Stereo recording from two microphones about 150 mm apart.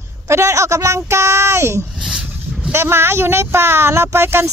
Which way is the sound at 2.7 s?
15° right (ahead or behind).